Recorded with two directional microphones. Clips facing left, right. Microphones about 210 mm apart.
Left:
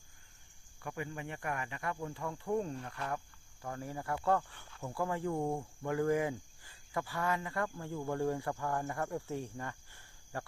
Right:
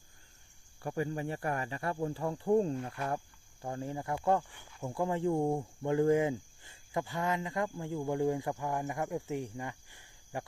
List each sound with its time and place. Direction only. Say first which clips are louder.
0.8 s cricket: right 7 dB; 35° right (ahead or behind)
3.6 s speech: right 4 dB; 25° right (ahead or behind)